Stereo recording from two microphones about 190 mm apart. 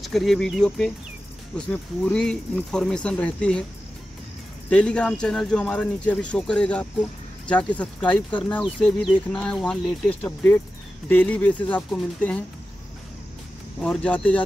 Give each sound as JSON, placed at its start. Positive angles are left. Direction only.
{"t": 0.0, "sound": "speech", "side_deg": 0}
{"t": 4.6, "sound": "speech", "side_deg": 5}
{"t": 13.7, "sound": "speech", "side_deg": 5}